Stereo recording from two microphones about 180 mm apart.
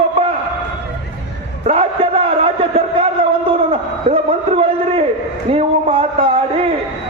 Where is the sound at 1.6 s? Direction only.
35° right (ahead or behind).